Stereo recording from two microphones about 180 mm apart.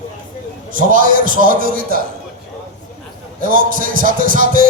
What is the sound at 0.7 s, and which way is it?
Speech, 50° right (ahead or behind).